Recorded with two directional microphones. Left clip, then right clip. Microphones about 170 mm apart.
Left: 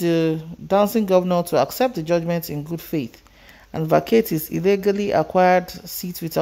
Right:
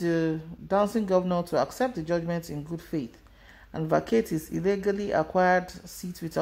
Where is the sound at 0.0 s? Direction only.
30° left (ahead or behind).